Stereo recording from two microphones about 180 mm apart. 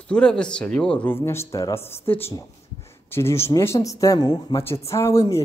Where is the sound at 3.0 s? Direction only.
15° left (ahead or behind).